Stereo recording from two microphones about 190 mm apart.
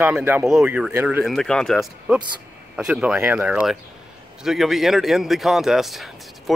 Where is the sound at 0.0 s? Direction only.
10° right (ahead or behind).